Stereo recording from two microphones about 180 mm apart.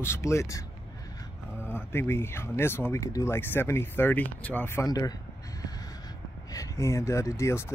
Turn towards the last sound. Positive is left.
turn(degrees=15)  # may be behind; listen again after turning